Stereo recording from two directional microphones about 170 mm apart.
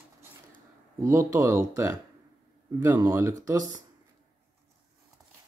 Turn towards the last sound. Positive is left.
turn(degrees=-20)  # may be behind; listen again after turning